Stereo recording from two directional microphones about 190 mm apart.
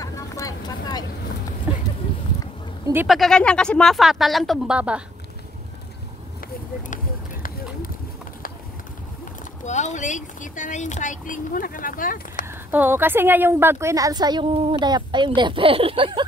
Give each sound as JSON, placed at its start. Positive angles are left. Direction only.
{"t": 0.0, "sound": "vehicle", "side_deg": 15}
{"t": 3.1, "sound": "speech", "side_deg": 0}
{"t": 9.7, "sound": "speech", "side_deg": 40}
{"t": 12.4, "sound": "a woman's voice", "side_deg": -10}